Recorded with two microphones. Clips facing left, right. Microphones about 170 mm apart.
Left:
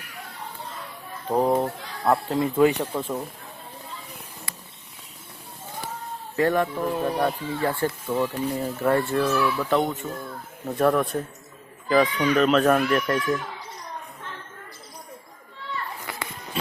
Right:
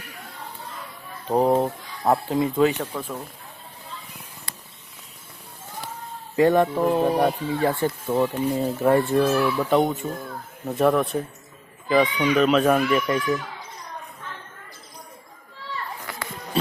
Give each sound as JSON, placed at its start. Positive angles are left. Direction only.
{"t": 1.3, "sound": "speech", "side_deg": -20}
{"t": 2.6, "sound": "speech", "side_deg": 15}
{"t": 6.3, "sound": "speech", "side_deg": -20}
{"t": 10.7, "sound": "speech", "side_deg": -5}